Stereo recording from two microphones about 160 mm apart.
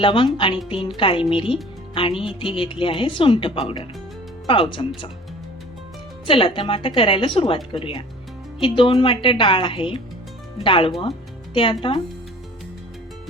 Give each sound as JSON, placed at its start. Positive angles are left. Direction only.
{"t": 0.0, "sound": "speech", "side_deg": 35}
{"t": 6.2, "sound": "speech", "side_deg": 35}